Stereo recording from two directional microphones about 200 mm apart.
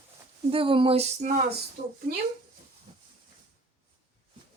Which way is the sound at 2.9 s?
25° right (ahead or behind).